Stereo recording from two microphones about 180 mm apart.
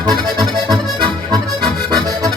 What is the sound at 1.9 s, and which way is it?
Accordion, 25° right (ahead or behind).